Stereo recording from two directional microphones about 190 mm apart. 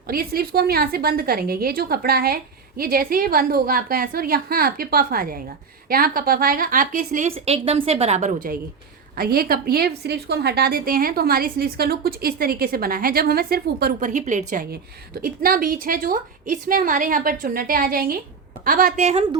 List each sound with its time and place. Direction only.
0.1 s a woman's voice: 50° right (ahead or behind)
7.3 s a woman's voice: 30° right (ahead or behind)
9.1 s a woman's voice: 50° right (ahead or behind)